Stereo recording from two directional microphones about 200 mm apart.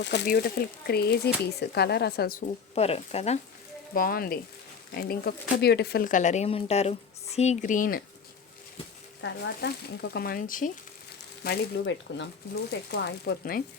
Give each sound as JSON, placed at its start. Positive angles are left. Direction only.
{"t": 0.0, "sound": "speech", "side_deg": 60}
{"t": 2.7, "sound": "speech", "side_deg": 30}
{"t": 3.9, "sound": "speech", "side_deg": 45}
{"t": 9.2, "sound": "speech", "side_deg": 55}
{"t": 11.4, "sound": "speech", "side_deg": 60}